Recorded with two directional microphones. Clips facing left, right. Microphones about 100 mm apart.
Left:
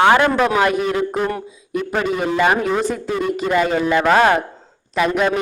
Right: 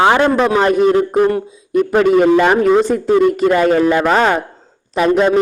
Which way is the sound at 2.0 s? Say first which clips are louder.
Right 7 dB; 55° right (ahead or behind).